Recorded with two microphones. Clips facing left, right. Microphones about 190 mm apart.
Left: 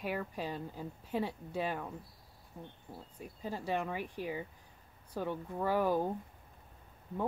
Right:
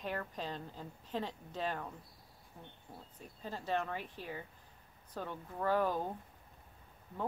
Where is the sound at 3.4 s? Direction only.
10° left (ahead or behind).